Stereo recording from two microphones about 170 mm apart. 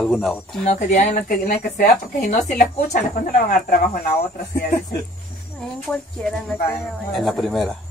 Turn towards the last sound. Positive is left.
turn(degrees=0)  # may be behind; listen again after turning